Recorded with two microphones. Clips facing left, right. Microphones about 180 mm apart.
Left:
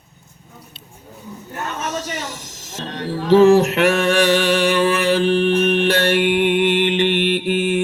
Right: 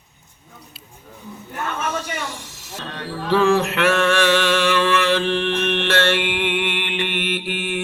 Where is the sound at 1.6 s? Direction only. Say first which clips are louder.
Even; 40° left (ahead or behind).